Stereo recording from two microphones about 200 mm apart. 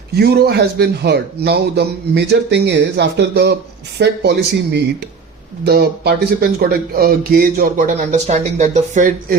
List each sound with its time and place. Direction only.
0.2 s a man's voice: 50° right (ahead or behind)